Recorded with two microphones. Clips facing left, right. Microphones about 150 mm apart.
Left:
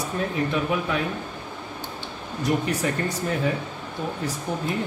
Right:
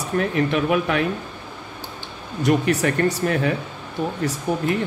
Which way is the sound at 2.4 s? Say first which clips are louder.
Right 5 dB; 75° right (ahead or behind).